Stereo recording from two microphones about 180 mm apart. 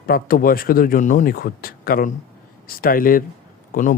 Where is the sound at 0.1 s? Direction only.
55° left (ahead or behind).